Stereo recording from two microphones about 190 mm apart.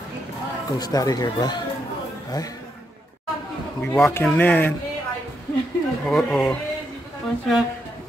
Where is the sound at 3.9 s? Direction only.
5° left (ahead or behind).